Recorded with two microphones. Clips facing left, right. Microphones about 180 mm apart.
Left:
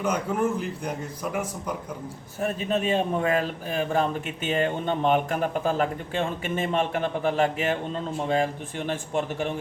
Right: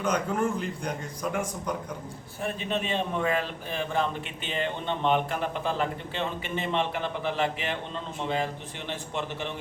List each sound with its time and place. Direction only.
0.0 s a man's voice: 5° left (ahead or behind)
2.4 s a man's voice: 40° left (ahead or behind)